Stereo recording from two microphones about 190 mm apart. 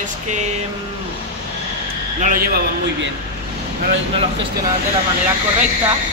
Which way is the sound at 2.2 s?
45° right (ahead or behind).